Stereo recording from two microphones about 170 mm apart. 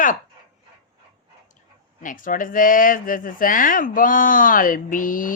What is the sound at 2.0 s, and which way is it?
Speech, 50° left (ahead or behind).